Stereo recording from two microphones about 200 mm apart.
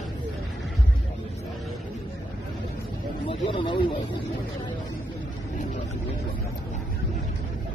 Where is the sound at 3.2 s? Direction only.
25° left (ahead or behind).